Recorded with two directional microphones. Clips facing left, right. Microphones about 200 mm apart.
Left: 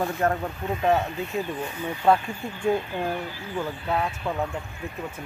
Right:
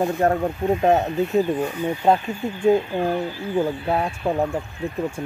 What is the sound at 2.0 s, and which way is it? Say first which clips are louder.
Speech: right 1 dB; 20° right (ahead or behind).